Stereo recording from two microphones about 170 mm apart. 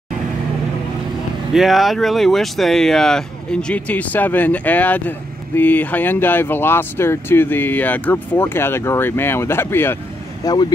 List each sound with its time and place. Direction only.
1.5 s speech: centre (ahead or behind)
10.4 s speech: 25° left (ahead or behind)